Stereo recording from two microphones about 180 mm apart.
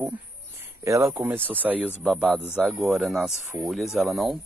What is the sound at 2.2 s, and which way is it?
Speech, 10° left (ahead or behind).